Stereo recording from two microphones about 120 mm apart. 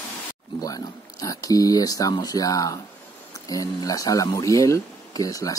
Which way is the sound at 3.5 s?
30° left (ahead or behind).